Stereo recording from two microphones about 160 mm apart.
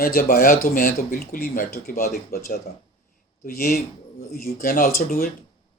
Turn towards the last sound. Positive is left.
turn(degrees=60)  # may be behind; listen again after turning